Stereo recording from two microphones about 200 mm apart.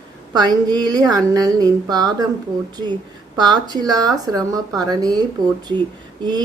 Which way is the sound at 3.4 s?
20° right (ahead or behind).